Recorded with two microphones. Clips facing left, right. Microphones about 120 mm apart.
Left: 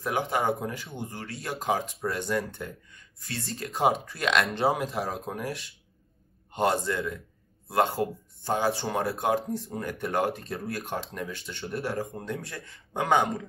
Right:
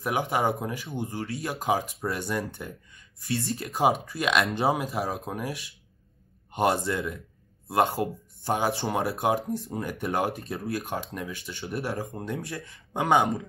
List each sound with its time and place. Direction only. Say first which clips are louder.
0.2 s speech: even; 10° right (ahead or behind)